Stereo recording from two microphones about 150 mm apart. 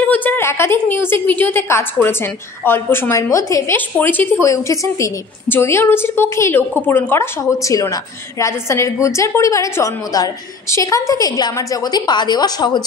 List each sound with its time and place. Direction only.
0.0 s a woman's voice: 10° left (ahead or behind); by 12.8 s 30° left (ahead or behind)